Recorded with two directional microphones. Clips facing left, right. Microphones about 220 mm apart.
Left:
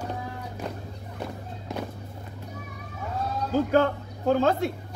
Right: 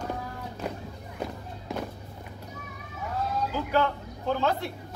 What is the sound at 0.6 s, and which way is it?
Music, 10° right (ahead or behind).